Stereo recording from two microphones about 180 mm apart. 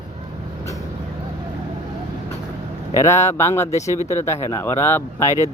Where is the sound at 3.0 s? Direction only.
15° left (ahead or behind).